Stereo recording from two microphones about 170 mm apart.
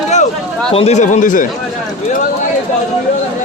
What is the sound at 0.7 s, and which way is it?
Speech, 40° left (ahead or behind).